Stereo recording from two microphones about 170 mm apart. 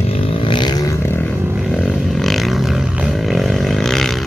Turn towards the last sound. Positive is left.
turn(degrees=0)  # may be behind; listen again after turning